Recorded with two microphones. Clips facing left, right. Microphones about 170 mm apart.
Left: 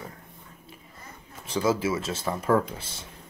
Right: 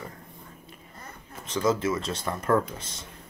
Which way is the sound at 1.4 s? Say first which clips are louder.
Even; 10° left (ahead or behind).